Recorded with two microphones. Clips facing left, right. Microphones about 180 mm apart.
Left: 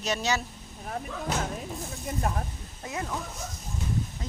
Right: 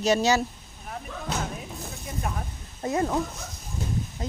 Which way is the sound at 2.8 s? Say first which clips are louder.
Right 8 dB; 40° right (ahead or behind).